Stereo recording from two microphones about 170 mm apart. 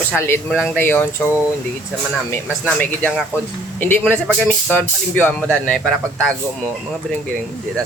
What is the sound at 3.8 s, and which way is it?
Speech, 10° left (ahead or behind).